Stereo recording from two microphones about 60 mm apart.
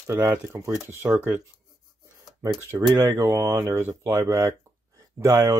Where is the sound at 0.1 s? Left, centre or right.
Right.